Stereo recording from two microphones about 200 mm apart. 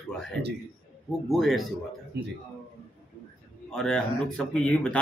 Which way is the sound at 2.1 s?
55° right (ahead or behind).